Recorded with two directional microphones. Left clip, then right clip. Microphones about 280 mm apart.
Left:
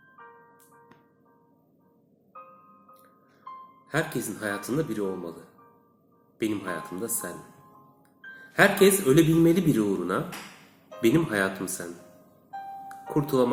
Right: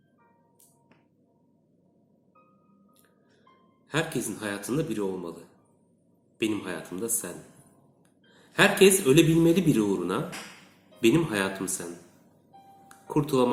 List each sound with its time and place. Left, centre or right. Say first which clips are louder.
2.3 s music: left 15 dB; left
3.8 s speech: even; centre
6.4 s speech: even; centre
8.3 s music: left 1 dB; centre
8.8 s speech: right 1 dB; centre
12.9 s music: even; centre